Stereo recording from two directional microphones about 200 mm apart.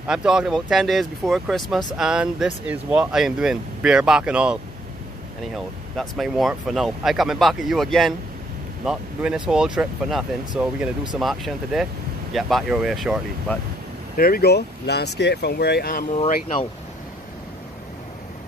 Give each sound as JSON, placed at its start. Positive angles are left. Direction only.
{"t": 0.0, "sound": "speech", "side_deg": -5}
{"t": 5.9, "sound": "speech", "side_deg": 0}
{"t": 14.1, "sound": "speech", "side_deg": 45}